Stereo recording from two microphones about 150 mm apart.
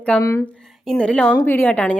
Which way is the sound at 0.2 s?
20° left (ahead or behind).